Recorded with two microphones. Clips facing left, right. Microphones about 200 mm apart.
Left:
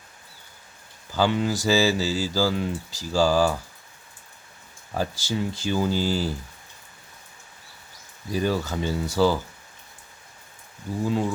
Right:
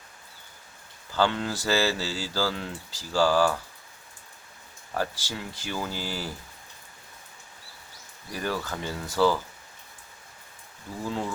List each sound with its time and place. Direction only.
1.1 s speech: 10° left (ahead or behind)
4.9 s speech: 20° left (ahead or behind)
8.3 s speech: 20° left (ahead or behind)
11.0 s speech: 15° left (ahead or behind)